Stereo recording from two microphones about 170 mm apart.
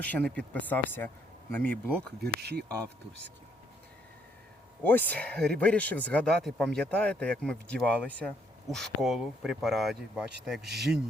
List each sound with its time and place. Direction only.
0.0 s speech: 10° left (ahead or behind)
2.2 s speech: 75° right (ahead or behind)
4.8 s speech: 10° left (ahead or behind)